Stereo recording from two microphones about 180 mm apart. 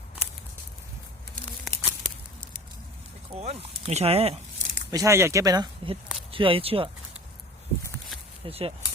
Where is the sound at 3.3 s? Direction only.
35° right (ahead or behind).